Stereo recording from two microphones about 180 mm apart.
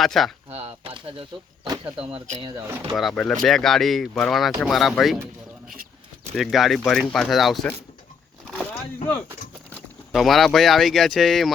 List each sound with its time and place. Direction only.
0.0 s speech: centre (ahead or behind)
0.5 s a sound: 35° right (ahead or behind)
1.6 s a sound: 20° right (ahead or behind)
2.0 s speech: 30° right (ahead or behind)
2.9 s speech: centre (ahead or behind)
6.3 s speech: centre (ahead or behind)
9.7 s speech: centre (ahead or behind)